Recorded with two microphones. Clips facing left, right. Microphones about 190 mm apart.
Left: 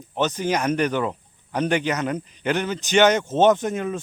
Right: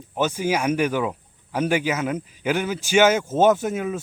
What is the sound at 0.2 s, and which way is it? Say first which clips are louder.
Speech: even; 10° right (ahead or behind).